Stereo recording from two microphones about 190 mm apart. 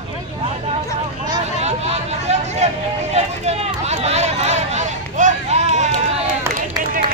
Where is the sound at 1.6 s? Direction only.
35° right (ahead or behind).